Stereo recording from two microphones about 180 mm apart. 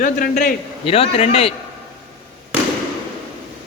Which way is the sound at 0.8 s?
35° left (ahead or behind).